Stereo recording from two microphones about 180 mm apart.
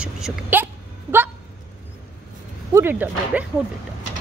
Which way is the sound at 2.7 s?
10° right (ahead or behind).